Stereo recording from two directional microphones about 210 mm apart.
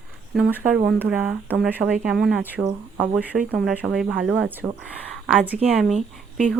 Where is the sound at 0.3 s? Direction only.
5° right (ahead or behind).